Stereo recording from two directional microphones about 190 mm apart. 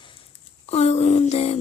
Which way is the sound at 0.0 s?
25° left (ahead or behind).